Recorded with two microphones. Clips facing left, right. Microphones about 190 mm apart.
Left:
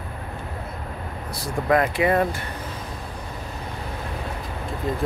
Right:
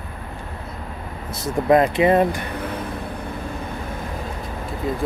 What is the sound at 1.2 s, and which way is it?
Speech, 20° right (ahead or behind).